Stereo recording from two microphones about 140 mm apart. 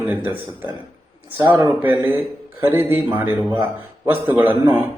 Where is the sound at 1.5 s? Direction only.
15° right (ahead or behind).